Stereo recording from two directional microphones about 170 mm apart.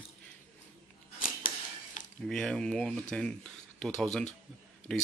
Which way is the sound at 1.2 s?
55° left (ahead or behind).